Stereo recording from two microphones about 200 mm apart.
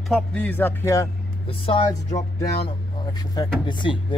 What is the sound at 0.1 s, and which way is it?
Speech, 5° left (ahead or behind).